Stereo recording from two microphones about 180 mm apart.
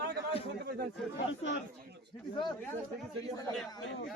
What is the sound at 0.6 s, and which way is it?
Snake, 60° right (ahead or behind).